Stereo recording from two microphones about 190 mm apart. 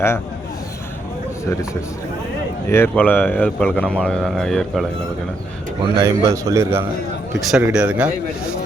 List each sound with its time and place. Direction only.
2.6 s speech: 10° left (ahead or behind)
5.8 s a man's voice: 15° right (ahead or behind)